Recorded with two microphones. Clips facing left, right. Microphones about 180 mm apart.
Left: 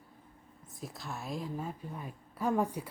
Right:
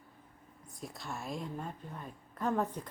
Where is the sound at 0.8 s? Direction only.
Centre (ahead or behind).